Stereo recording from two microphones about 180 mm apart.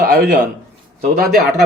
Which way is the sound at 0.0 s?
55° right (ahead or behind).